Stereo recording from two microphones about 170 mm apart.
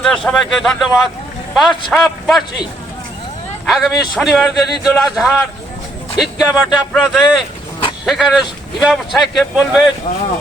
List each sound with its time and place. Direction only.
0.3 s speech: 5° left (ahead or behind)
3.7 s speech: centre (ahead or behind)
10.1 s speech: 50° left (ahead or behind)